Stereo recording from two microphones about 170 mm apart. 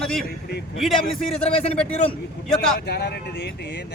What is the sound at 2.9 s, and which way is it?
Speech, 70° left (ahead or behind).